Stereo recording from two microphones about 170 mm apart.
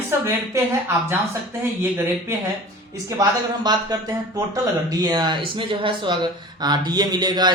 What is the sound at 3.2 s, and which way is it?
A man's voice, 25° right (ahead or behind).